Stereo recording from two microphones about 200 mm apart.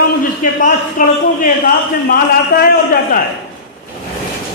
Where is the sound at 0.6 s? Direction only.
40° left (ahead or behind).